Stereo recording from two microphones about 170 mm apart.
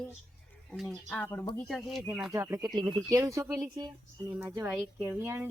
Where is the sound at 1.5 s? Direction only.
Centre (ahead or behind).